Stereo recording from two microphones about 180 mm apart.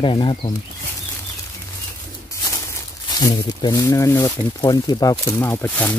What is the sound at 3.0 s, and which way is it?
Speech, 25° left (ahead or behind).